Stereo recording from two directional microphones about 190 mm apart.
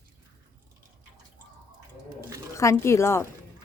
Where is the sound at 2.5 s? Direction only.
15° left (ahead or behind).